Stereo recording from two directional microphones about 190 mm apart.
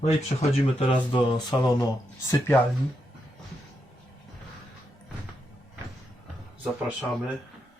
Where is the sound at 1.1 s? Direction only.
20° left (ahead or behind).